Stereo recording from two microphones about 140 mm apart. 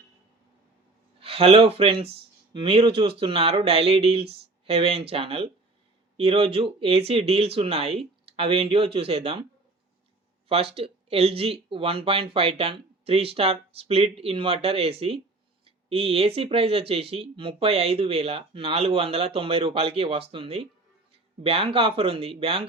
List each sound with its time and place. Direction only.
1.2 s speech: 45° right (ahead or behind)
10.5 s speech: 45° right (ahead or behind)